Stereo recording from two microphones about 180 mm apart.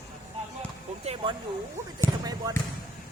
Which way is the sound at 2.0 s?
20° right (ahead or behind).